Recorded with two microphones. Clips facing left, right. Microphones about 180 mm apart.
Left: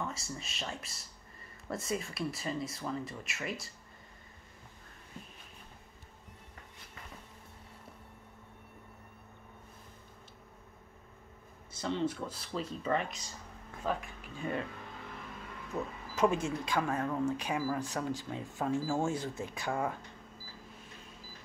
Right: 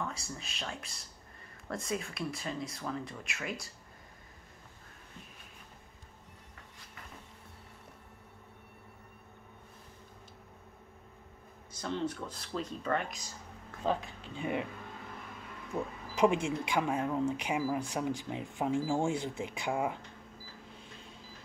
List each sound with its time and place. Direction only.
0.0 s speech: centre (ahead or behind)
11.7 s speech: 5° left (ahead or behind)
13.8 s speech: 25° right (ahead or behind)
15.7 s speech: 15° right (ahead or behind)